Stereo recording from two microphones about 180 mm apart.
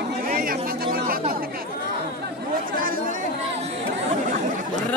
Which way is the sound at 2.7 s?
50° right (ahead or behind).